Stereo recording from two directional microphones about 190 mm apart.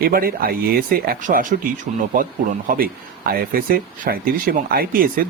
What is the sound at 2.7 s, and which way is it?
Speech, 50° right (ahead or behind).